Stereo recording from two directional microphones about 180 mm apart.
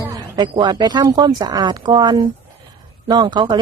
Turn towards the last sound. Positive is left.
turn(degrees=-25)  # may be behind; listen again after turning